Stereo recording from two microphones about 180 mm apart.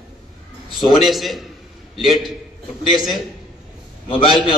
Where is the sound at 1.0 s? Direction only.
Centre (ahead or behind).